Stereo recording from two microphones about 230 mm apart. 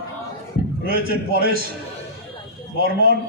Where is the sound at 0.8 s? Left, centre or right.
Right.